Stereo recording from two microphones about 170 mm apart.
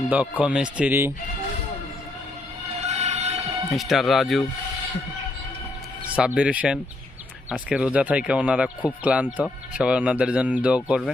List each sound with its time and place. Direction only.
0.1 s speech: 10° right (ahead or behind)
2.8 s a sound: 40° right (ahead or behind)
3.7 s speech: centre (ahead or behind)
6.1 s speech: 5° right (ahead or behind)